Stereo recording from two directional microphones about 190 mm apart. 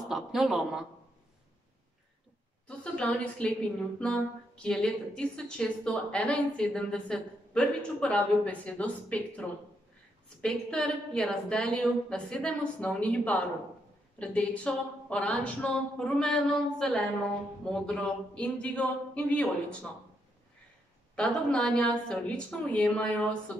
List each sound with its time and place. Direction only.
0.1 s a woman's voice: centre (ahead or behind)
2.7 s a woman's voice: 5° left (ahead or behind)
21.2 s a woman's voice: 5° left (ahead or behind)